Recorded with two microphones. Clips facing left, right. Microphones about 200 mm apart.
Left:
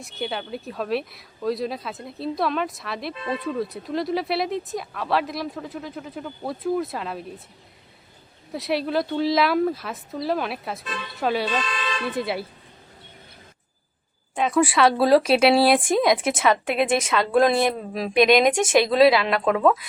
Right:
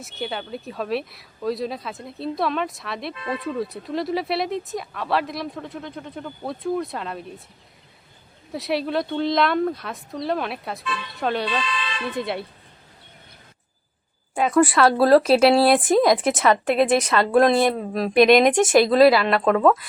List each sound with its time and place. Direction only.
0.0 s speech: centre (ahead or behind)
8.5 s speech: centre (ahead or behind)
11.4 s speech: 45° left (ahead or behind)
12.1 s speech: 5° left (ahead or behind)
14.3 s speech: centre (ahead or behind)